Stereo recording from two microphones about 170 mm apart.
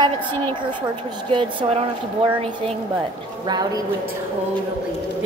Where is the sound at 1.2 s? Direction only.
30° right (ahead or behind).